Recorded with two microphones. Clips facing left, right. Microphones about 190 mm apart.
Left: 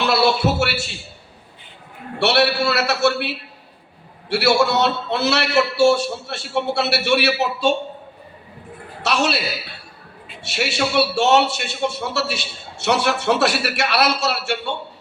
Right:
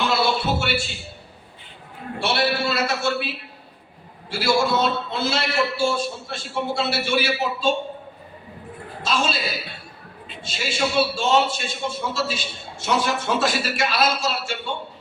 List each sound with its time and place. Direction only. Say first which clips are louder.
0.0 s a sound: left 4 dB; 70° left (ahead or behind)
2.1 s a man's voice: left 5 dB; 70° left (ahead or behind)
9.0 s a man's voice: left 4 dB; 70° left (ahead or behind)
10.4 s a man's voice: left 3 dB; 70° left (ahead or behind)